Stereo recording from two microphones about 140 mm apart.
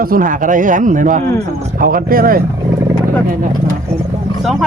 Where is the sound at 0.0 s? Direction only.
85° right; by 1.2 s 65° right (ahead or behind).